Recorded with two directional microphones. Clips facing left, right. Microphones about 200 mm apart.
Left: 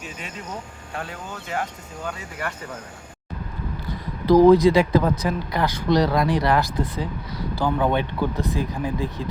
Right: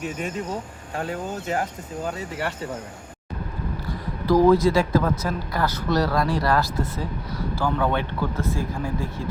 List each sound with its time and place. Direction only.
0.0 s speech: 50° right (ahead or behind)
4.3 s speech: 20° left (ahead or behind)